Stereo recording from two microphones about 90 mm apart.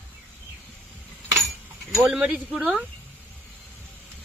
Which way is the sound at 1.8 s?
5° right (ahead or behind).